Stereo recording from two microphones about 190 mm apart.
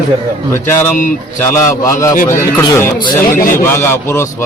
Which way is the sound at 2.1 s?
45° left (ahead or behind).